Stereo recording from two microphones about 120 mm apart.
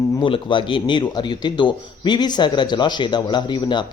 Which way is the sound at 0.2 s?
45° left (ahead or behind).